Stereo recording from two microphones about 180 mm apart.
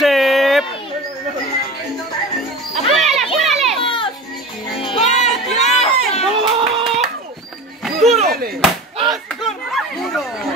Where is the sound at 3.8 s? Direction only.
30° left (ahead or behind).